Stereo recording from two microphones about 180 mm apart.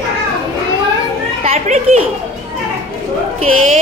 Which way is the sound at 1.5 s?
35° right (ahead or behind).